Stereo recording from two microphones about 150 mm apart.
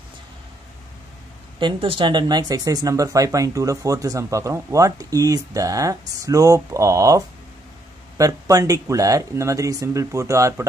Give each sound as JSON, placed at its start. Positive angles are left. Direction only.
{"t": 1.6, "sound": "speech", "side_deg": -35}